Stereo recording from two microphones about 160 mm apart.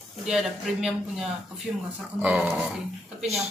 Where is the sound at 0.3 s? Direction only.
5° right (ahead or behind).